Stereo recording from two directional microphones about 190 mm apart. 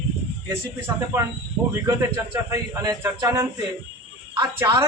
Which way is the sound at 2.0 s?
15° right (ahead or behind).